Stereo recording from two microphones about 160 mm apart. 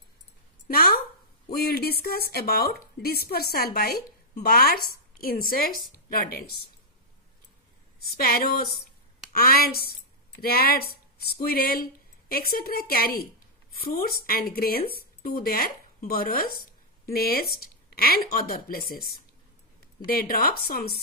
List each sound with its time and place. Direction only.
0.7 s a sound: 70° left (ahead or behind)
1.5 s a woman's voice: 70° left (ahead or behind)
8.2 s a woman's voice: 65° left (ahead or behind)
20.1 s a woman's voice: 65° left (ahead or behind)